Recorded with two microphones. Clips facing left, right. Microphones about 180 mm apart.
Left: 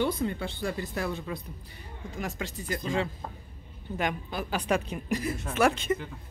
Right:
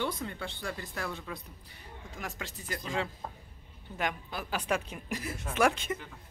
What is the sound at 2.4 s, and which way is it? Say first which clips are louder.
Speech: left 6 dB; 5° right (ahead or behind).